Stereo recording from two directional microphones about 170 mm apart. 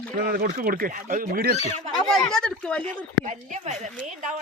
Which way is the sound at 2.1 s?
5° left (ahead or behind).